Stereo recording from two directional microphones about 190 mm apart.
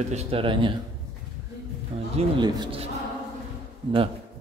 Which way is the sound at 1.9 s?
30° right (ahead or behind).